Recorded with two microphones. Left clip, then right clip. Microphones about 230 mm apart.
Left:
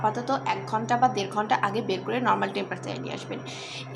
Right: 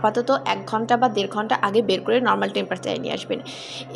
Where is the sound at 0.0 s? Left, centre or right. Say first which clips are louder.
Right 6 dB; right.